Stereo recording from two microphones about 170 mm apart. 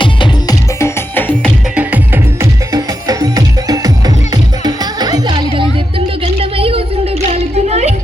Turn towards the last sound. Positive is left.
turn(degrees=-40)  # may be behind; listen again after turning